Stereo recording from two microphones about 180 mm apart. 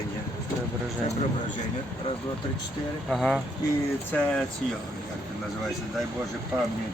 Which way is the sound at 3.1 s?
Centre (ahead or behind).